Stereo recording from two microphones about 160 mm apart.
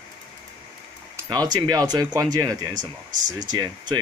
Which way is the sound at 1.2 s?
25° right (ahead or behind).